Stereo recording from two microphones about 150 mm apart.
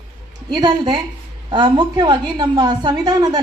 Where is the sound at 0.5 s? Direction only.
30° right (ahead or behind).